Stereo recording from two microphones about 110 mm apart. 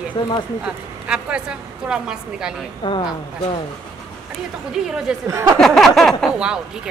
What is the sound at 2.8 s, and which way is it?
Speech, 50° left (ahead or behind).